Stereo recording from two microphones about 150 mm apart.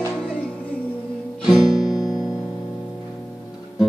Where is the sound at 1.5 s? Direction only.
Centre (ahead or behind).